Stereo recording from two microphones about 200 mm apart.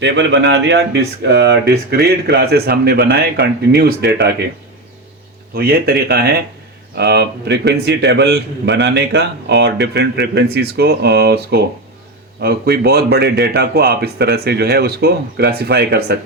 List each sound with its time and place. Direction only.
0.0 s speech: 60° right (ahead or behind)
5.5 s a man's voice: 50° right (ahead or behind)